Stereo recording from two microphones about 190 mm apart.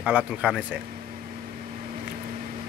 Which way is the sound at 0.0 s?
5° right (ahead or behind).